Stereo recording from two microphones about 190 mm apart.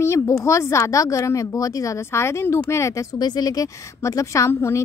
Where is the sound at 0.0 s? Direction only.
15° left (ahead or behind).